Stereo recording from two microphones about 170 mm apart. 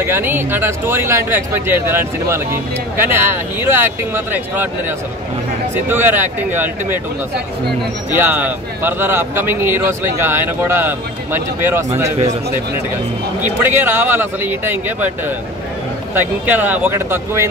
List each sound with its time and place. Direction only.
0.0 s speech: 15° right (ahead or behind)
8.1 s speech: 10° right (ahead or behind)
13.4 s speech: 10° right (ahead or behind)